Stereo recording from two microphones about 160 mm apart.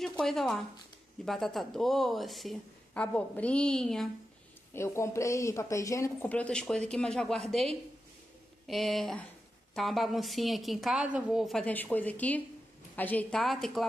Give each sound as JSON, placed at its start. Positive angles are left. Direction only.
{"t": 0.0, "sound": "speech", "side_deg": 0}
{"t": 4.7, "sound": "speech", "side_deg": 15}
{"t": 8.6, "sound": "speech", "side_deg": 0}